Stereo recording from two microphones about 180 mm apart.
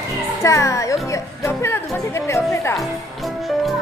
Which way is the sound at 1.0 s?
15° left (ahead or behind).